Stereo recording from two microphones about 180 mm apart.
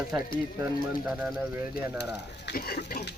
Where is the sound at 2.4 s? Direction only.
55° left (ahead or behind).